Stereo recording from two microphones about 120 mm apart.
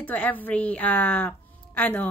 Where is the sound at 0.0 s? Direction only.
15° left (ahead or behind).